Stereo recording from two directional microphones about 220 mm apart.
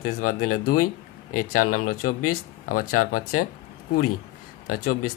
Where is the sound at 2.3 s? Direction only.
40° left (ahead or behind).